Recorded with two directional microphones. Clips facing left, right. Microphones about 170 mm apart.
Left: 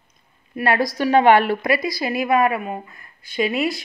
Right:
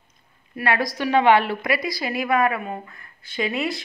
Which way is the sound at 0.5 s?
35° left (ahead or behind).